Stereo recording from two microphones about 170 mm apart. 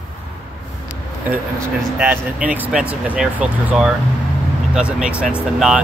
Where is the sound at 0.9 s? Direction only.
10° right (ahead or behind).